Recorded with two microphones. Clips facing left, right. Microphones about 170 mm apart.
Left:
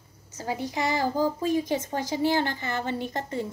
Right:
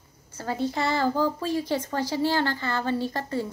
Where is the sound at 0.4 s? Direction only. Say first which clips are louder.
Right 2 dB; 15° left (ahead or behind).